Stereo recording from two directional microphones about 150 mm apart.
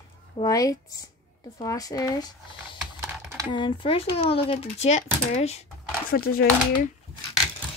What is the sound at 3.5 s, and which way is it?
Speech, 30° left (ahead or behind).